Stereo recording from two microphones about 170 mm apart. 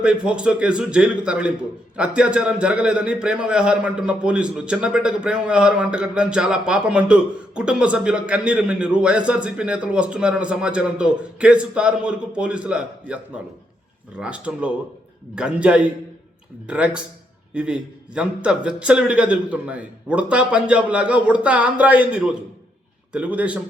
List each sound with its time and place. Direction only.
0.0 s a man's voice: 5° right (ahead or behind)